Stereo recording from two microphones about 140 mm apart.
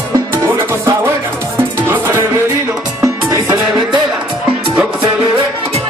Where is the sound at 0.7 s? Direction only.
20° right (ahead or behind).